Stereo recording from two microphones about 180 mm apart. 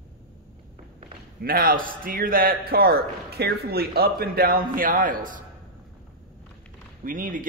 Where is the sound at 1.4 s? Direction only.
55° right (ahead or behind).